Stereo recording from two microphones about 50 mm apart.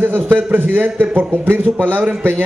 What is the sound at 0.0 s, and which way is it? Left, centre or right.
A man's voice, right.